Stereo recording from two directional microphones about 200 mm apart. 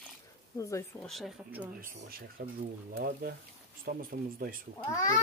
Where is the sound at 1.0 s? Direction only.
Centre (ahead or behind).